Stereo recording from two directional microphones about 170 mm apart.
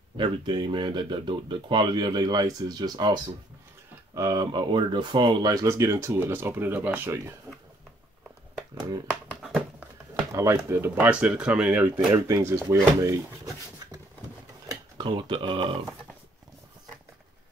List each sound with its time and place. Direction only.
0.2 s speech: 25° right (ahead or behind); by 7.3 s 10° right (ahead or behind)
9.3 s a sound: 5° right (ahead or behind)
10.3 s speech: 15° right (ahead or behind)
14.7 s speech: 30° right (ahead or behind)